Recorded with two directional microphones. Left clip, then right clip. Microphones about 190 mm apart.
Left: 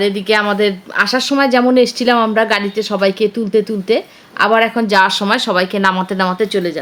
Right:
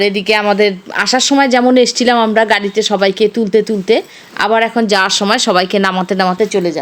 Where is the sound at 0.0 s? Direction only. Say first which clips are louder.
Right 2 dB; 25° right (ahead or behind).